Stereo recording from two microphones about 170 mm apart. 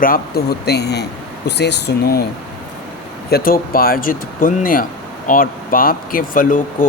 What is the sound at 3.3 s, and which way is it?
Speech, 60° left (ahead or behind).